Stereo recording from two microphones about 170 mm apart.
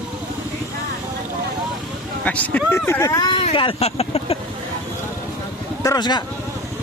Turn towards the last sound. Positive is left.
turn(degrees=20)  # may be behind; listen again after turning